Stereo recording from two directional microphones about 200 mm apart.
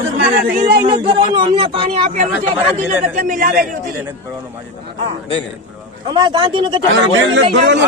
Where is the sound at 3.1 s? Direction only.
40° right (ahead or behind).